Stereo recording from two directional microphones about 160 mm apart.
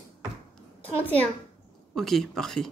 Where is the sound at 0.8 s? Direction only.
10° left (ahead or behind).